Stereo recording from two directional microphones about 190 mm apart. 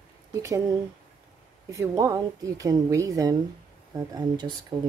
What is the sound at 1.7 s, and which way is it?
Speech, 15° right (ahead or behind).